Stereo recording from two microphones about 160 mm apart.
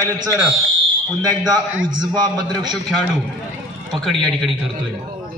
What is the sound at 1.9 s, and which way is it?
Speech, 25° right (ahead or behind).